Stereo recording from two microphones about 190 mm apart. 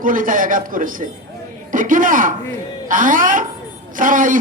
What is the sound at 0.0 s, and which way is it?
A man's voice, 45° right (ahead or behind).